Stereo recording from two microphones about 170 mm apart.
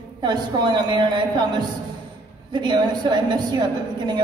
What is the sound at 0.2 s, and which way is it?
A woman's voice, 25° right (ahead or behind).